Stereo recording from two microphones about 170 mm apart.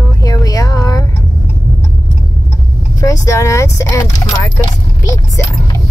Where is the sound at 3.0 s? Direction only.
20° left (ahead or behind).